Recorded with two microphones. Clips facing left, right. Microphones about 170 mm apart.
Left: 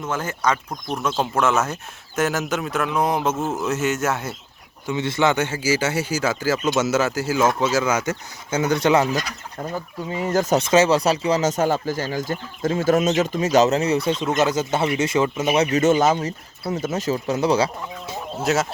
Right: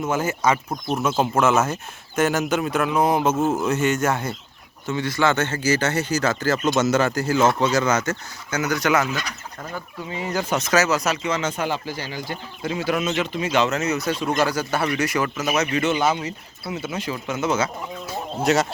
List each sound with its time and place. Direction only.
0.0 s speech: 10° right (ahead or behind)
4.9 s speech: 20° left (ahead or behind)
8.5 s speech: 30° left (ahead or behind); by 10.6 s 45° left (ahead or behind)
10.6 s speech: 30° left (ahead or behind)
18.4 s speech: centre (ahead or behind)